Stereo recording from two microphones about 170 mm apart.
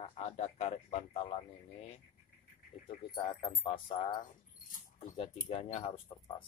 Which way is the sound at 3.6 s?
30° left (ahead or behind).